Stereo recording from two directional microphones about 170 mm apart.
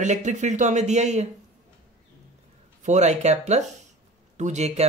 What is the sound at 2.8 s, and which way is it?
Speech, 40° right (ahead or behind).